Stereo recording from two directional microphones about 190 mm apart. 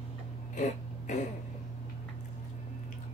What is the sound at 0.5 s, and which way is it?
Throat clearing, 40° left (ahead or behind).